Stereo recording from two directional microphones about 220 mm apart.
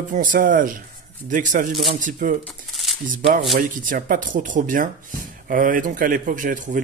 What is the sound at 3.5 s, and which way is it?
Speech, 40° right (ahead or behind).